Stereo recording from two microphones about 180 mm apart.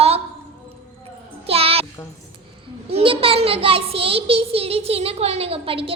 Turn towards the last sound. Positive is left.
turn(degrees=-30)  # may be behind; listen again after turning